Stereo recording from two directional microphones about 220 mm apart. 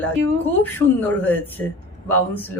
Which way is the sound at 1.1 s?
10° left (ahead or behind).